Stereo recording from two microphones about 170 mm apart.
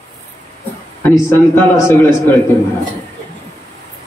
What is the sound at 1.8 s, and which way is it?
Speech, 15° left (ahead or behind).